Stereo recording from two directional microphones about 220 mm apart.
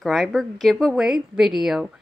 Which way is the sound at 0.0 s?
Centre (ahead or behind).